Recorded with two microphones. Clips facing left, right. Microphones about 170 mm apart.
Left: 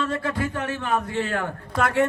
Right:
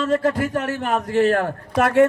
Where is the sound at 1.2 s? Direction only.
60° right (ahead or behind).